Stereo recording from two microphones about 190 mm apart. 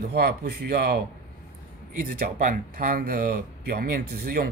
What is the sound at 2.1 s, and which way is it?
Speech, 45° right (ahead or behind).